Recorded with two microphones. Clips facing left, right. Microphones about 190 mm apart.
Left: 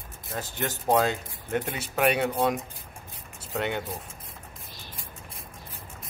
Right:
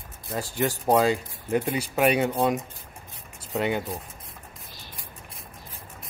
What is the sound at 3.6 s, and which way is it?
Speech, 5° right (ahead or behind).